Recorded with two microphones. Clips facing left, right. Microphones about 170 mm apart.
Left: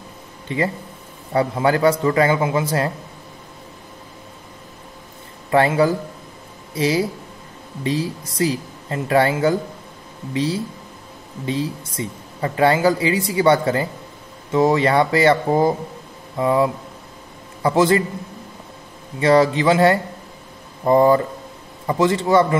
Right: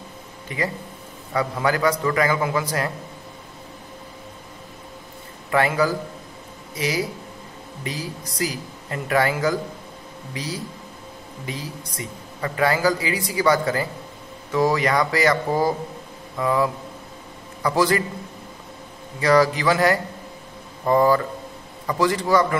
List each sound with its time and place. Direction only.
0.5 s a woman's voice: 30° left (ahead or behind)
5.5 s a woman's voice: 30° left (ahead or behind)
19.1 s a woman's voice: 25° left (ahead or behind)